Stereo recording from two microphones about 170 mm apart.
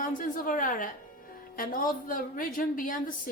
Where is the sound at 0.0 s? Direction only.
55° left (ahead or behind).